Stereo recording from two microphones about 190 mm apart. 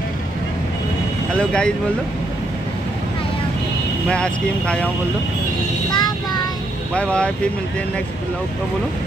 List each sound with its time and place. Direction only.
1.4 s speech: 5° left (ahead or behind)
4.1 s speech: 5° left (ahead or behind)
5.9 s child singing: 20° left (ahead or behind)
6.9 s speech: 5° left (ahead or behind)